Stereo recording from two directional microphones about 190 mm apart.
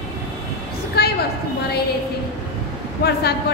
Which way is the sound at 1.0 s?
55° left (ahead or behind).